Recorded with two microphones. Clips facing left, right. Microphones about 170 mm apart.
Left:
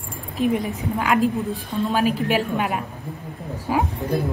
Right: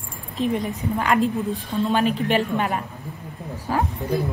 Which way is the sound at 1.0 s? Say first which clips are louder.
Left 1 dB; 5° left (ahead or behind).